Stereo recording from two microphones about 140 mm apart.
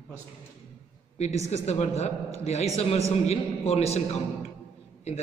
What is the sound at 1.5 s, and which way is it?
A man's voice, 50° left (ahead or behind).